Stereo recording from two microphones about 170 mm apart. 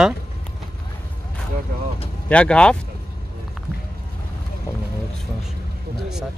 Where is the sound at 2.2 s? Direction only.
5° left (ahead or behind).